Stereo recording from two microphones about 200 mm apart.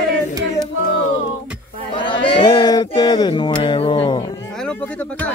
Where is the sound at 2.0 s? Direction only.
25° left (ahead or behind).